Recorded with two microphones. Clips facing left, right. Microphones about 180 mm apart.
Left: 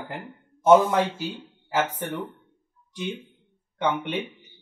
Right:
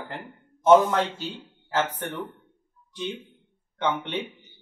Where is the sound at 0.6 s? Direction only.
10° left (ahead or behind).